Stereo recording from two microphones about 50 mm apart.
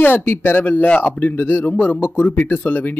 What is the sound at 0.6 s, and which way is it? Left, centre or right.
Speech, left.